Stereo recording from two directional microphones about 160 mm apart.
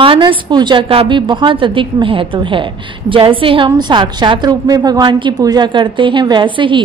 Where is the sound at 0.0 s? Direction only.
35° right (ahead or behind).